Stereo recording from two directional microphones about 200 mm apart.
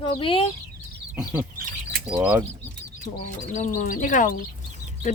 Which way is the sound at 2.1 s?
10° right (ahead or behind).